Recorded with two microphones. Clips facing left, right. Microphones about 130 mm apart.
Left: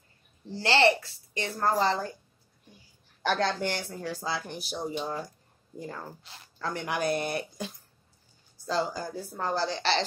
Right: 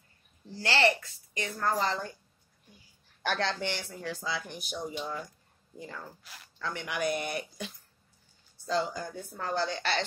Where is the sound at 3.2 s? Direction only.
45° left (ahead or behind).